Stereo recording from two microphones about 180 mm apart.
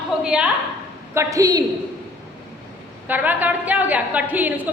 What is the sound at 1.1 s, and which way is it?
Speech, 20° right (ahead or behind).